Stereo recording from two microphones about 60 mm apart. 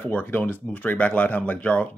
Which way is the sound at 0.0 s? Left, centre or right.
Left.